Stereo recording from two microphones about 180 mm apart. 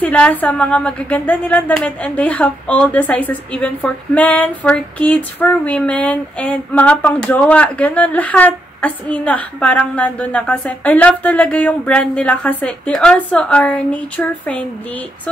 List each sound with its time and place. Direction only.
0.0 s a woman's voice: 10° left (ahead or behind)